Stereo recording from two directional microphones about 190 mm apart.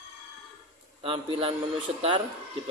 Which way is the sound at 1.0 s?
25° right (ahead or behind).